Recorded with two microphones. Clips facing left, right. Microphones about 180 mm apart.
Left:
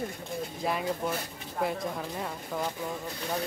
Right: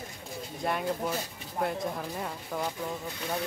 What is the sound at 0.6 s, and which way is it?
Speech, centre (ahead or behind).